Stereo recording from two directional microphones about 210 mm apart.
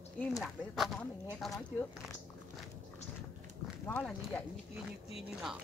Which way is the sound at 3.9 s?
5° left (ahead or behind).